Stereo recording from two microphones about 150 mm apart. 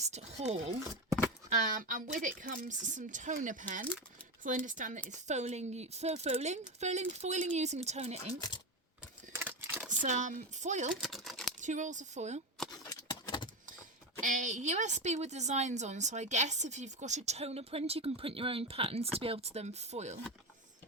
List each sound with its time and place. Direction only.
0.0 s a woman's voice: 45° right (ahead or behind)
1.5 s a woman's voice: 60° right (ahead or behind)
9.3 s crumpling: 15° right (ahead or behind)
10.0 s speech: 55° right (ahead or behind)
11.0 s a sound: centre (ahead or behind)
11.6 s a woman's voice: 55° right (ahead or behind)
12.8 s a sound: 25° left (ahead or behind)
14.2 s a woman's voice: 55° right (ahead or behind)